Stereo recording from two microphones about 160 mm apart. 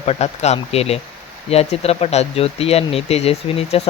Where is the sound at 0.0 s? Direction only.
40° left (ahead or behind).